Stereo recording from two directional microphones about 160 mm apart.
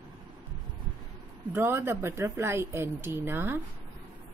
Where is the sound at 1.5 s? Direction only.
15° right (ahead or behind).